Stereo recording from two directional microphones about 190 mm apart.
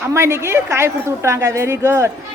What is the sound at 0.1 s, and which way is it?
A woman's voice, 15° right (ahead or behind).